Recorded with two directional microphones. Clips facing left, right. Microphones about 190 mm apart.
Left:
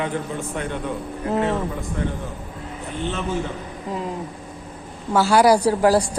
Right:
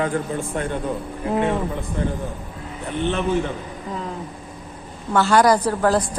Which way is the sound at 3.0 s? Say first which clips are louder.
Right 5 dB; 60° right (ahead or behind).